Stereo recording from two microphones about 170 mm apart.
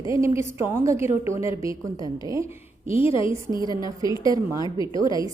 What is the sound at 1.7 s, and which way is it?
Speech, 20° right (ahead or behind).